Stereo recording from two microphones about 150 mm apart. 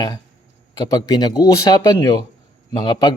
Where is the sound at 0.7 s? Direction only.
25° left (ahead or behind).